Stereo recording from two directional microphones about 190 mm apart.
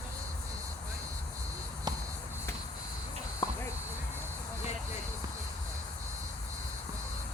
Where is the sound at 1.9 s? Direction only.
20° right (ahead or behind).